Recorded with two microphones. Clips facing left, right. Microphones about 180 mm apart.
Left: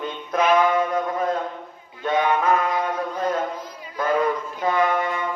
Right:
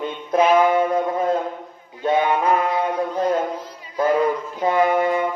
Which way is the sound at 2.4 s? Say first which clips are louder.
Right 2 dB; 30° right (ahead or behind).